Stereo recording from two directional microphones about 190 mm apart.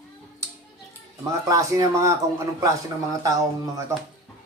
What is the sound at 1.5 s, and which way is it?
Speech, 15° right (ahead or behind).